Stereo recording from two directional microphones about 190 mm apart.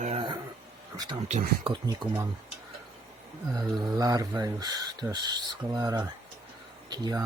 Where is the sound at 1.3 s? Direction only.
35° right (ahead or behind).